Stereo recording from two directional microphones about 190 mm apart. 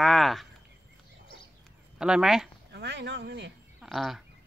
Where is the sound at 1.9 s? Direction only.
5° right (ahead or behind).